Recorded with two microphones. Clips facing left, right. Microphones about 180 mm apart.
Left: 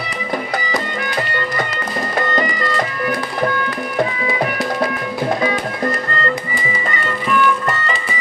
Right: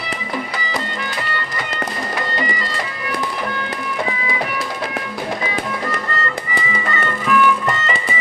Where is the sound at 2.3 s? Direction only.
50° left (ahead or behind).